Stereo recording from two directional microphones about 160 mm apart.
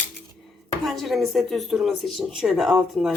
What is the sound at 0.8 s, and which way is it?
Speech, centre (ahead or behind).